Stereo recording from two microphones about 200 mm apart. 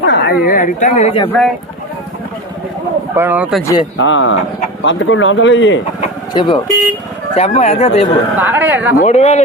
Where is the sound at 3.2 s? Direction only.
10° right (ahead or behind).